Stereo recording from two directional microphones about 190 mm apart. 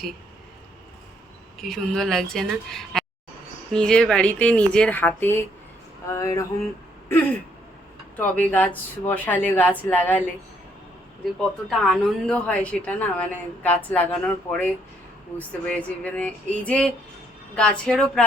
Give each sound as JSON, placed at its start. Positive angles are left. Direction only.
{"t": 1.5, "sound": "a woman's voice", "side_deg": 0}
{"t": 8.2, "sound": "a woman's voice", "side_deg": 5}
{"t": 11.3, "sound": "a woman's voice", "side_deg": 0}